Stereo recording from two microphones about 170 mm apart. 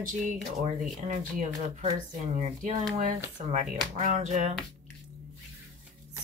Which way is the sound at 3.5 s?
45° right (ahead or behind).